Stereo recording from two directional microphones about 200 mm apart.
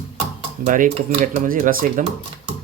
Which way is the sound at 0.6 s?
40° right (ahead or behind).